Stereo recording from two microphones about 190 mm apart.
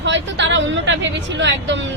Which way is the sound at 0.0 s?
70° right (ahead or behind).